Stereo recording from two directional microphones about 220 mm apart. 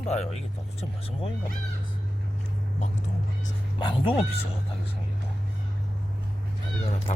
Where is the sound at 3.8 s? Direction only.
20° left (ahead or behind).